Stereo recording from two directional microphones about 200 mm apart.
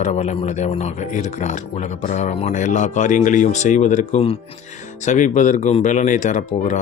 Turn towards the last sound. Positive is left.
turn(degrees=40)  # may be behind; listen again after turning